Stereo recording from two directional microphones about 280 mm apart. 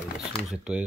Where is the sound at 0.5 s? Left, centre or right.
Centre.